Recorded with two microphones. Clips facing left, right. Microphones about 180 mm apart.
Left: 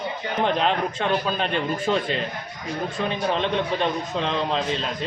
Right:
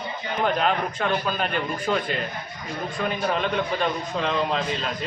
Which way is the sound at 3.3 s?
25° left (ahead or behind).